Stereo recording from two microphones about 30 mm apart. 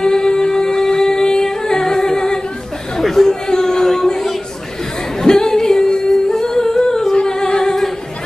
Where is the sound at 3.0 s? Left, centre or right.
Centre.